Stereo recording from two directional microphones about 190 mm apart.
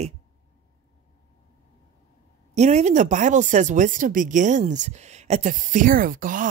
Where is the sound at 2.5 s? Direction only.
35° right (ahead or behind).